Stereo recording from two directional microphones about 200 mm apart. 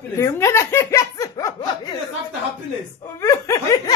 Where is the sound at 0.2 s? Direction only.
15° left (ahead or behind).